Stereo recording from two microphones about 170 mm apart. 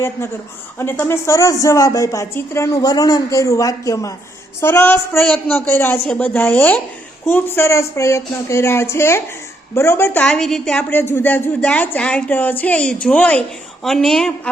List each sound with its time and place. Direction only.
0.2 s a woman's voice: 15° left (ahead or behind)